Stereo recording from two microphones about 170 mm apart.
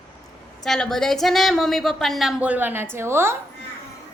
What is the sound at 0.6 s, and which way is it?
A woman's voice, centre (ahead or behind).